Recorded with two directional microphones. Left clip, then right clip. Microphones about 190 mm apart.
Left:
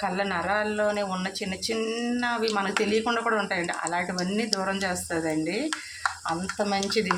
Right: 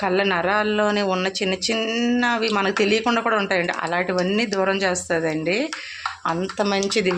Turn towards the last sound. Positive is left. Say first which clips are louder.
# right 5 dB
turn(degrees=-40)  # may be behind; listen again after turning